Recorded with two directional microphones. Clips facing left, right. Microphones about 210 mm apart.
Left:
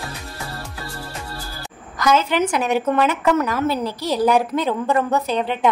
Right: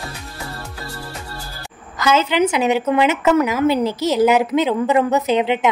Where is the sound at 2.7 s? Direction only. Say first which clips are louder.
Right 2 dB; 5° right (ahead or behind).